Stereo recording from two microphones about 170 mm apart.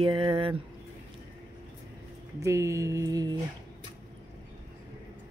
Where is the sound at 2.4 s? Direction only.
15° right (ahead or behind).